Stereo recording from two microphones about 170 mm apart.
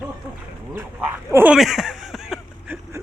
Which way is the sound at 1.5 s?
Centre (ahead or behind).